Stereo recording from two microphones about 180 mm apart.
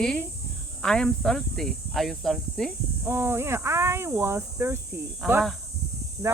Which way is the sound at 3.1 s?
15° right (ahead or behind).